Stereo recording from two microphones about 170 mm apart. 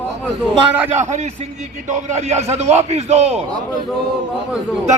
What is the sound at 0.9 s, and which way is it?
A man's voice, 45° right (ahead or behind).